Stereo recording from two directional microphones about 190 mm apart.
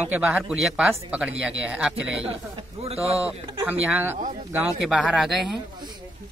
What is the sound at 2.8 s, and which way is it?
Speech, 30° right (ahead or behind).